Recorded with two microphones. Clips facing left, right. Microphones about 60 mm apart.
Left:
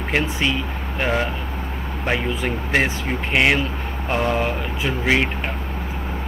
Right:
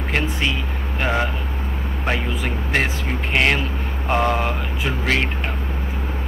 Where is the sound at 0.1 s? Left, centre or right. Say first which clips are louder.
Left 2 dB; centre.